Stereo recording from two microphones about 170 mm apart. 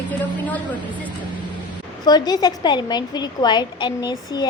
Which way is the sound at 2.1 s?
25° left (ahead or behind).